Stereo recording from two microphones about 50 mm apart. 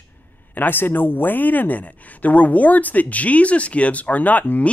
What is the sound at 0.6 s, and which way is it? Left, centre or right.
Speech, left.